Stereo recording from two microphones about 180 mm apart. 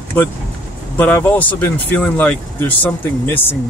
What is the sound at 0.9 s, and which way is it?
Speech, 10° left (ahead or behind).